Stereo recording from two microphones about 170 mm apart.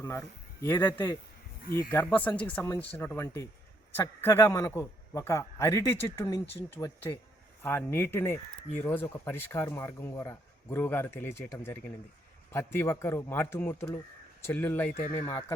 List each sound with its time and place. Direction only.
0.0 s speech: 15° left (ahead or behind)
1.9 s speech: 15° left (ahead or behind)
14.9 s speech: 40° left (ahead or behind)
15.2 s speech: 20° left (ahead or behind)